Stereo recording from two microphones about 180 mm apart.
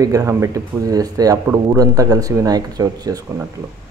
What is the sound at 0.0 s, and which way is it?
Speech, 20° right (ahead or behind).